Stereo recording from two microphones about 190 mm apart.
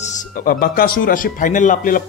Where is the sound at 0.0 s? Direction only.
50° left (ahead or behind).